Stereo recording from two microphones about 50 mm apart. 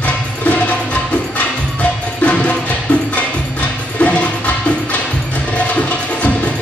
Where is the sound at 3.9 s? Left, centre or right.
Left.